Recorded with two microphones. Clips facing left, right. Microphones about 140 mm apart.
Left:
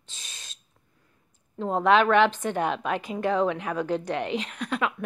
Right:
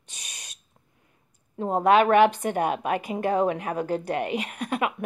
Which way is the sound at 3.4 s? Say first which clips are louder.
Right 1 dB; 50° right (ahead or behind).